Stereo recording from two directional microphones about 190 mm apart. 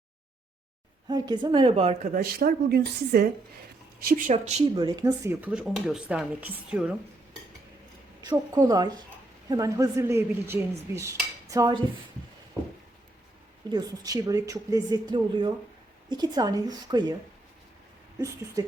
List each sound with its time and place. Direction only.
1.0 s speech: 20° right (ahead or behind); by 3.2 s 55° right (ahead or behind)
4.0 s speech: 45° right (ahead or behind)
4.7 s dishes: 20° right (ahead or behind); by 6.9 s 5° right (ahead or behind)
8.2 s speech: 20° right (ahead or behind)
9.5 s dishes: 15° right (ahead or behind)
13.7 s speech: 20° right (ahead or behind)